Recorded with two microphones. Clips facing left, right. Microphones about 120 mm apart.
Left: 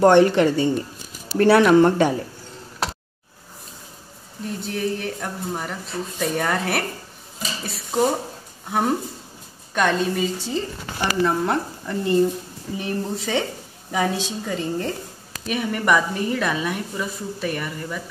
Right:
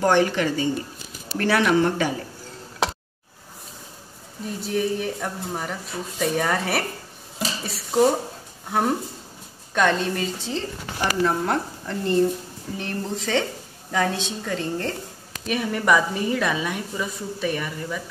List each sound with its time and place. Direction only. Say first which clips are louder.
0.0 s a woman's voice: left 6 dB; 60° left (ahead or behind)
4.5 s a woman's voice: right 1 dB; centre (ahead or behind)